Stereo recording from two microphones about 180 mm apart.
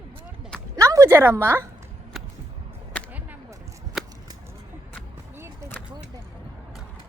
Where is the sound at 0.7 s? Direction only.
15° right (ahead or behind).